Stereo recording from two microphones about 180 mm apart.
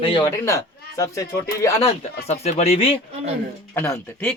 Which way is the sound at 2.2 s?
35° left (ahead or behind).